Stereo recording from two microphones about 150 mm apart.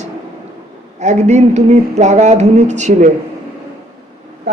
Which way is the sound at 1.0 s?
50° right (ahead or behind).